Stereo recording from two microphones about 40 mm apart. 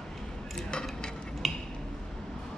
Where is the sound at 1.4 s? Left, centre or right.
Centre.